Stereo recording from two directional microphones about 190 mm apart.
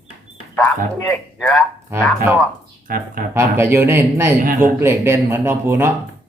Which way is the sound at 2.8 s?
45° right (ahead or behind).